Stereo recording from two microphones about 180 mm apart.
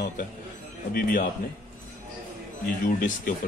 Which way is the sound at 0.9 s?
55° left (ahead or behind).